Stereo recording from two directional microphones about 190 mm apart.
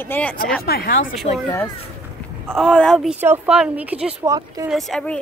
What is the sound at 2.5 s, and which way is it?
Speech, centre (ahead or behind).